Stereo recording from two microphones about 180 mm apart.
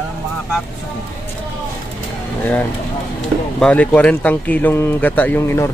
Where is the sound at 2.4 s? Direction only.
10° left (ahead or behind).